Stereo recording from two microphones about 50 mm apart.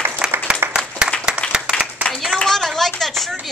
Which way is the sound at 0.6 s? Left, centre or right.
Right.